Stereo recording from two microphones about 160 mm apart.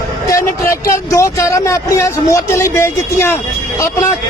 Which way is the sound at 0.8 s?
20° left (ahead or behind).